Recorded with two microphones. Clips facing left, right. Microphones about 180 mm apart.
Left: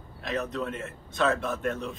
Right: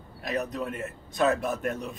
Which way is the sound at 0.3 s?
15° right (ahead or behind).